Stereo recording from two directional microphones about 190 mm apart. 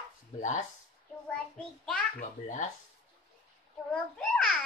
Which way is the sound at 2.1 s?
45° left (ahead or behind).